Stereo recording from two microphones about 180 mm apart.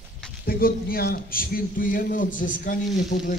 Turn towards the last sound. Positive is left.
turn(degrees=50)  # may be behind; listen again after turning